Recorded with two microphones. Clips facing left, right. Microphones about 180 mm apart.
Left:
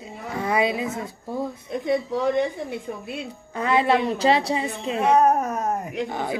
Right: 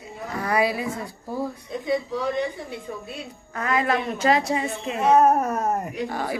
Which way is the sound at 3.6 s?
30° left (ahead or behind).